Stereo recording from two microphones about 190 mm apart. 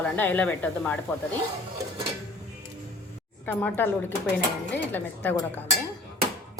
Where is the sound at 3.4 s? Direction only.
10° left (ahead or behind).